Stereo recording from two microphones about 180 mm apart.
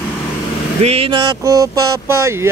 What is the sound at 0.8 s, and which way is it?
Speech, 30° right (ahead or behind).